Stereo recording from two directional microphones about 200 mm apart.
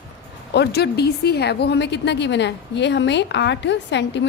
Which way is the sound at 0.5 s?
55° left (ahead or behind).